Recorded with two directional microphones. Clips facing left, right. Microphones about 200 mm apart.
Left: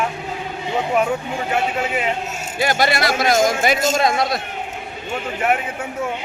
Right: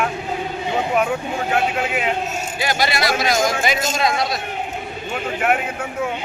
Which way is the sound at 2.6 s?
50° left (ahead or behind).